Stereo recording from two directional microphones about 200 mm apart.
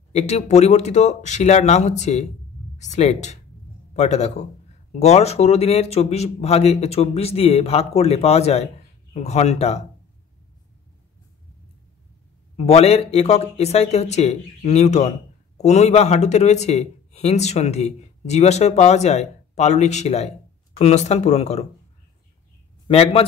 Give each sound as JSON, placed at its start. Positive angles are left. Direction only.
{"t": 0.1, "sound": "speech", "side_deg": 35}
{"t": 12.5, "sound": "speech", "side_deg": 30}
{"t": 22.8, "sound": "a man's voice", "side_deg": 30}